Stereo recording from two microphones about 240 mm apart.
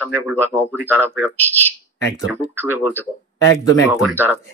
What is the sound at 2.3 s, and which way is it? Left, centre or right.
Speech, centre.